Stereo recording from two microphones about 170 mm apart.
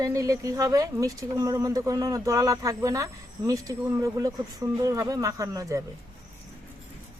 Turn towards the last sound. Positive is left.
turn(degrees=-20)  # may be behind; listen again after turning